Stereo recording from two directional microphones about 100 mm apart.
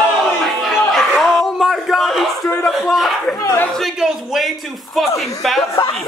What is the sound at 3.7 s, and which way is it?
Speech, 5° right (ahead or behind).